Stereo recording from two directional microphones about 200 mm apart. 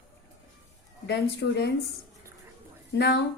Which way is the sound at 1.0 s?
60° left (ahead or behind).